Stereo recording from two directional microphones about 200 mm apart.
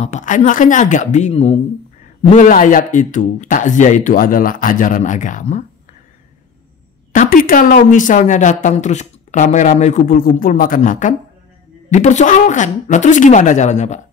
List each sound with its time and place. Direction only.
0.0 s speech: 35° left (ahead or behind)
7.1 s a sound: 45° left (ahead or behind)
7.9 s speech: 40° left (ahead or behind)